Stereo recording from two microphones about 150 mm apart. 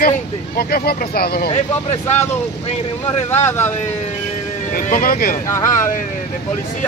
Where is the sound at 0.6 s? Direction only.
90° left.